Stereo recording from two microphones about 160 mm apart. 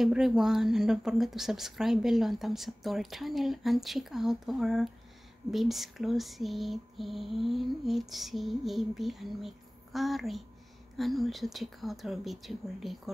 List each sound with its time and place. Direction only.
0.0 s a woman's voice: 5° right (ahead or behind)